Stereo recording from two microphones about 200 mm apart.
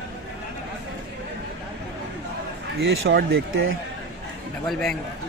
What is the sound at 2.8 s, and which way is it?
Speech, 60° right (ahead or behind).